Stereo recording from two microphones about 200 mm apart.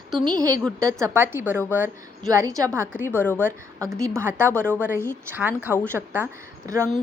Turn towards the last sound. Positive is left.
turn(degrees=-15)  # may be behind; listen again after turning